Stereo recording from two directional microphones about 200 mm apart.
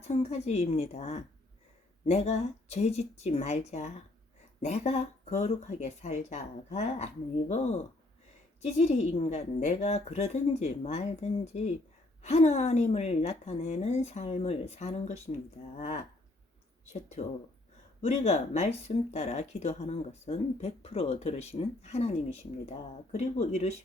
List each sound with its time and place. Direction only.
0.1 s speech: 35° left (ahead or behind)
16.9 s speech: 35° left (ahead or behind)